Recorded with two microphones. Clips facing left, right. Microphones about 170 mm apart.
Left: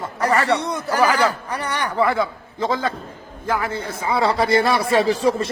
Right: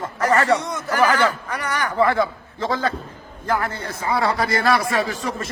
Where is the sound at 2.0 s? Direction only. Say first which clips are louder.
Right 1 dB; 10° left (ahead or behind).